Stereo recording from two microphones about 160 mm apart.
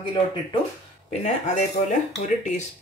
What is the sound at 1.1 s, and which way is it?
Speech, 40° left (ahead or behind).